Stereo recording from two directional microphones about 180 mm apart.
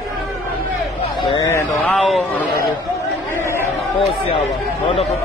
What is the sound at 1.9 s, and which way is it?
Speech, centre (ahead or behind).